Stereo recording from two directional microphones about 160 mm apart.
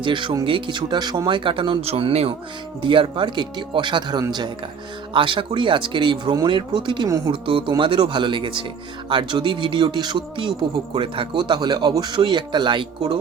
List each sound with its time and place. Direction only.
0.0 s speech: 30° right (ahead or behind)